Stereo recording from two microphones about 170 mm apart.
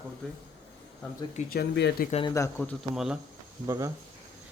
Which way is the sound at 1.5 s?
70° left (ahead or behind).